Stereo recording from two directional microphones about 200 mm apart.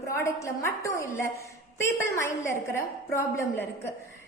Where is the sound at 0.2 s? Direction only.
15° left (ahead or behind).